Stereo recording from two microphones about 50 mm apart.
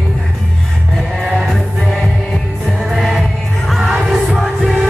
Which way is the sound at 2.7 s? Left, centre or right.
Centre.